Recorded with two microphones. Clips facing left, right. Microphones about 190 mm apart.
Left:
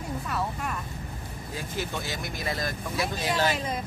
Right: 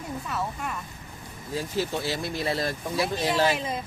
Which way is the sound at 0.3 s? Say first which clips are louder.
Even; centre (ahead or behind).